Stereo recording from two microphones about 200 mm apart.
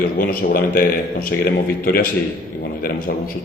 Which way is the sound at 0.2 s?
45° left (ahead or behind).